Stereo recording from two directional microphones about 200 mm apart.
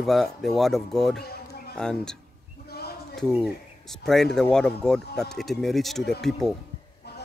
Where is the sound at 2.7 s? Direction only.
50° left (ahead or behind).